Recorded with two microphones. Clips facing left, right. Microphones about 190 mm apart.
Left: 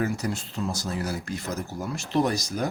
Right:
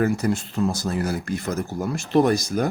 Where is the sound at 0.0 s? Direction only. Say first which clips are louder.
Right 6 dB; 55° right (ahead or behind).